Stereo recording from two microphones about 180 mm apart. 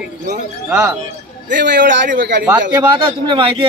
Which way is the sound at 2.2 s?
75° right (ahead or behind).